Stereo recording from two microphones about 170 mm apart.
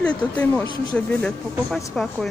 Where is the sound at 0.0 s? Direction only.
10° left (ahead or behind).